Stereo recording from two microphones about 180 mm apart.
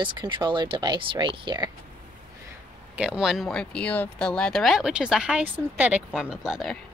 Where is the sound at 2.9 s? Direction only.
5° right (ahead or behind).